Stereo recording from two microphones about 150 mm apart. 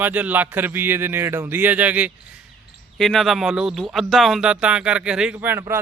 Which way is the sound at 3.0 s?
Centre (ahead or behind).